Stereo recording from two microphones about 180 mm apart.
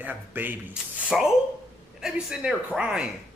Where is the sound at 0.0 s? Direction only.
10° right (ahead or behind).